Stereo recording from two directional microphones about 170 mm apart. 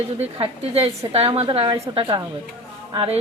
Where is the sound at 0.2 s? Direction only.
35° right (ahead or behind).